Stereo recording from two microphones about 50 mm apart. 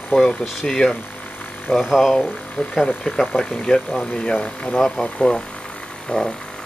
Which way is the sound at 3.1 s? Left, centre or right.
Centre.